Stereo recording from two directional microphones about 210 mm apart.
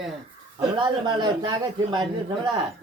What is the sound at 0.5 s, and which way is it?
A man's voice, 20° right (ahead or behind).